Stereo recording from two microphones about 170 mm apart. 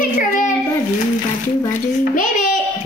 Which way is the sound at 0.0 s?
50° left (ahead or behind).